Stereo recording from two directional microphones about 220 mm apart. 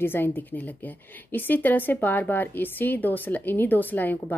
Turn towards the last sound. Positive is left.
turn(degrees=10)  # may be behind; listen again after turning